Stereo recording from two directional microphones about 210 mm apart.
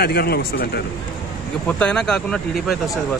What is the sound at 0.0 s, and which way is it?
Speech, 50° left (ahead or behind).